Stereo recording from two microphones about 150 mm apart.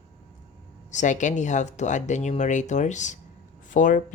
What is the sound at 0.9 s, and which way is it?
Speech, 55° left (ahead or behind).